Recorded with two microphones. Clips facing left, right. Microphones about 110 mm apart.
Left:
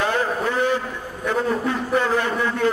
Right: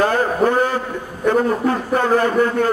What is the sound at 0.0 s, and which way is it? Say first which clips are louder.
A man's voice: right 6 dB; 45° right (ahead or behind).